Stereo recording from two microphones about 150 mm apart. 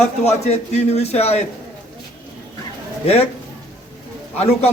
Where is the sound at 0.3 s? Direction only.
45° left (ahead or behind).